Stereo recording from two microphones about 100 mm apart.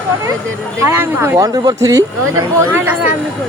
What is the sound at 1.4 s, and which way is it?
Speech, 40° right (ahead or behind).